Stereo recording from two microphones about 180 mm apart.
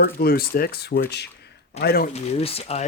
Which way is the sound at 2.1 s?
35° left (ahead or behind).